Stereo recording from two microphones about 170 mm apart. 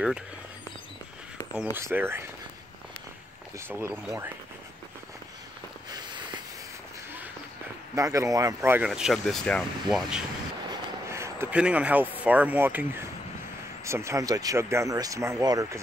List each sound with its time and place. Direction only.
1.8 s speech: 15° right (ahead or behind)
3.5 s speech: 15° right (ahead or behind)
5.9 s walk: 25° right (ahead or behind)
7.9 s speech: 20° right (ahead or behind); by 10.2 s centre (ahead or behind)
10.7 s speech: 15° right (ahead or behind)